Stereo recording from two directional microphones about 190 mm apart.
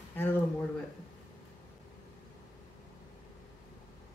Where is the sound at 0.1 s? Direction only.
10° left (ahead or behind).